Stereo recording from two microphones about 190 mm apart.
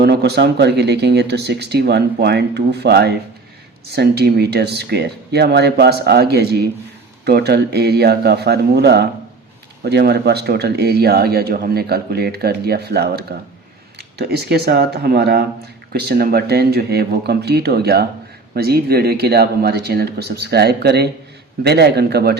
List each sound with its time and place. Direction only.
0.0 s speech: 60° right (ahead or behind)